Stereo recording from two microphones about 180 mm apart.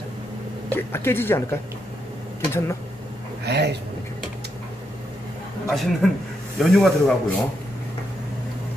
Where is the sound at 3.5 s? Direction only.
70° right (ahead or behind).